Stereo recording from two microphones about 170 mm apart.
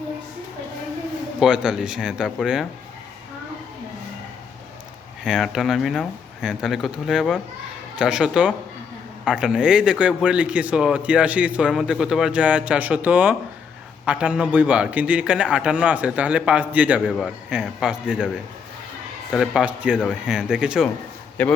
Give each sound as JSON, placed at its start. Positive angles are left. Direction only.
{"t": 1.4, "sound": "speech", "side_deg": -5}
{"t": 5.2, "sound": "a man's voice", "side_deg": -5}
{"t": 19.3, "sound": "speech", "side_deg": -5}
{"t": 21.4, "sound": "a man's voice", "side_deg": 5}